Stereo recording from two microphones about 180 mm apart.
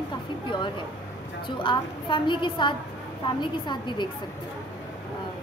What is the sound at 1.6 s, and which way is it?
A woman's voice, 25° left (ahead or behind).